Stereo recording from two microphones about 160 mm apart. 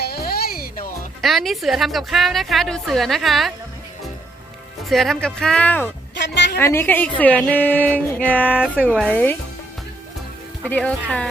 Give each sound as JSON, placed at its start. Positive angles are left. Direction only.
{"t": 0.0, "sound": "music", "side_deg": 75}
{"t": 1.2, "sound": "a woman's voice", "side_deg": 0}
{"t": 4.9, "sound": "a woman's voice", "side_deg": 0}
{"t": 6.1, "sound": "a sound", "side_deg": 90}
{"t": 6.6, "sound": "music", "side_deg": 15}
{"t": 8.5, "sound": "speech", "side_deg": -5}
{"t": 9.0, "sound": "music", "side_deg": 10}
{"t": 10.6, "sound": "music", "side_deg": 10}